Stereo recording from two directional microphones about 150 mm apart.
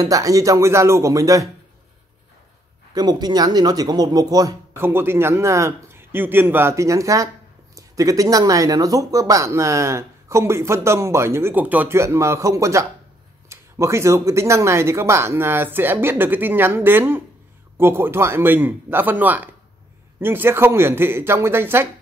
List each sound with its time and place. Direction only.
0.0 s speech: 25° right (ahead or behind)
2.9 s speech: 25° right (ahead or behind)